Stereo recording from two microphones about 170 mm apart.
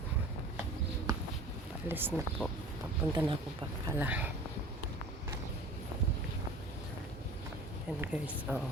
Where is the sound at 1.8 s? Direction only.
10° right (ahead or behind).